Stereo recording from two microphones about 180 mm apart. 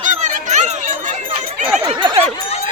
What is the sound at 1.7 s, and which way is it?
Speech, 30° right (ahead or behind).